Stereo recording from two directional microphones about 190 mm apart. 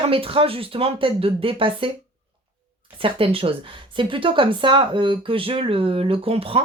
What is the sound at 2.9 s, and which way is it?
Speech, 30° right (ahead or behind).